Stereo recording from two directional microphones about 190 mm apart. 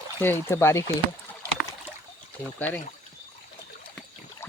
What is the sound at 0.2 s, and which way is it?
Speech, 10° left (ahead or behind).